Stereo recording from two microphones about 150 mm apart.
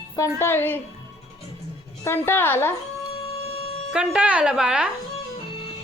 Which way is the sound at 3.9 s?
5° right (ahead or behind).